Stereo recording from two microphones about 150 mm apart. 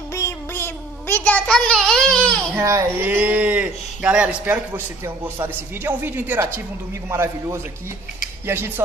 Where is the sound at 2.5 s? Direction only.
20° right (ahead or behind).